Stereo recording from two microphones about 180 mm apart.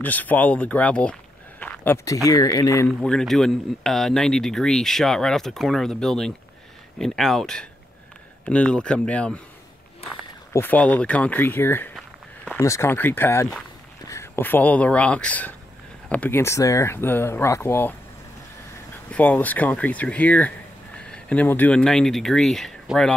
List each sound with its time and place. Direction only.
0.0 s speech: 10° left (ahead or behind)
1.6 s a sound: 10° left (ahead or behind)
2.2 s speech: 20° left (ahead or behind)
3.0 s speech: 5° left (ahead or behind)
10.5 s speech: 10° left (ahead or behind)
19.0 s speech: 10° left (ahead or behind)